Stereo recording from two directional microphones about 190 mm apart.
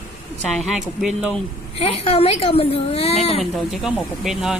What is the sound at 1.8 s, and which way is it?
A woman's voice, 30° left (ahead or behind).